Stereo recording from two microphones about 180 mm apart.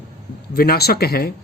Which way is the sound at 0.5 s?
60° left (ahead or behind).